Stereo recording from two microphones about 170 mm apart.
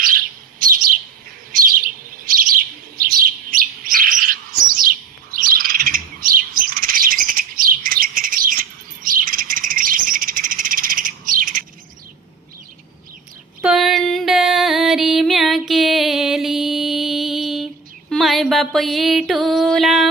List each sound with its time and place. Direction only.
1.5 s bird: 55° right (ahead or behind)
13.6 s music: 5° right (ahead or behind)